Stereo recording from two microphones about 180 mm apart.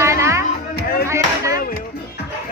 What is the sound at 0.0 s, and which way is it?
Music, 15° right (ahead or behind).